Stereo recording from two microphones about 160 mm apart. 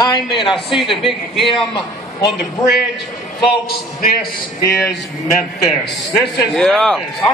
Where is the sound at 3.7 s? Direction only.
70° left (ahead or behind).